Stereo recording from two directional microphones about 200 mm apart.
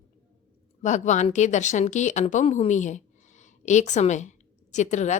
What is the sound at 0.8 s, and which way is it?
A woman's voice, 35° left (ahead or behind).